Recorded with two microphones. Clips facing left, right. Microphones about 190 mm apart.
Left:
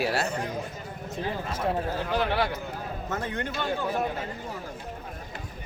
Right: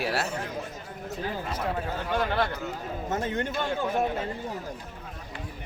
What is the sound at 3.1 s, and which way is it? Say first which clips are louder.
Speech: right 3 dB; 25° right (ahead or behind).